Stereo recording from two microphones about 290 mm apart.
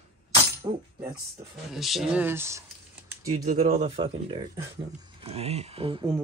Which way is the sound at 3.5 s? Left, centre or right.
Right.